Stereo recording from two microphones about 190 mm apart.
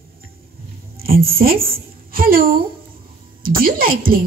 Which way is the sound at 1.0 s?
50° right (ahead or behind).